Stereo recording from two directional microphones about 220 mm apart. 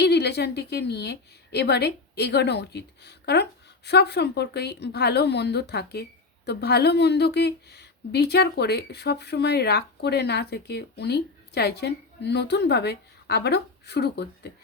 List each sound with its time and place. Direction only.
0.0 s a woman's voice: 50° left (ahead or behind)